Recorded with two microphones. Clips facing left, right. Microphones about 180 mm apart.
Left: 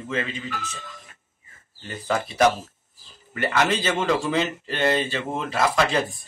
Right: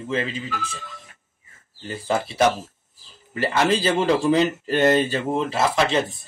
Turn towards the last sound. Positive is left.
turn(degrees=-25)  # may be behind; listen again after turning